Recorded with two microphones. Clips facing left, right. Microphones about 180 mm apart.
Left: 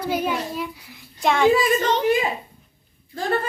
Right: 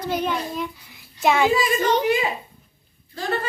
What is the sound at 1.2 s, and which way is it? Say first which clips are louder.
Speech: left 1 dB; 5° right (ahead or behind).